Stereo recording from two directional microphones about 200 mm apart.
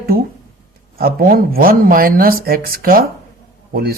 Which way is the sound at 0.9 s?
45° right (ahead or behind).